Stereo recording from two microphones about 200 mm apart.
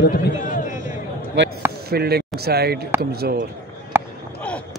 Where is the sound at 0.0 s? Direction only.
45° left (ahead or behind).